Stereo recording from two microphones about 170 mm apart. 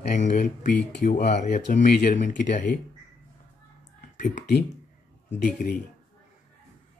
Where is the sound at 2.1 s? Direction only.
45° left (ahead or behind).